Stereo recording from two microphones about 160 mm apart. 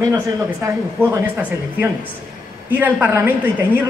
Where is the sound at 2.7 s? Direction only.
10° right (ahead or behind).